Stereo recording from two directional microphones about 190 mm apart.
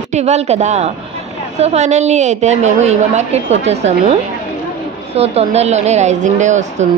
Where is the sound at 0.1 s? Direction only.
35° right (ahead or behind).